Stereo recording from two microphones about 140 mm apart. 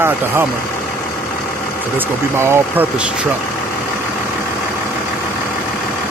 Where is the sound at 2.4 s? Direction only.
15° right (ahead or behind).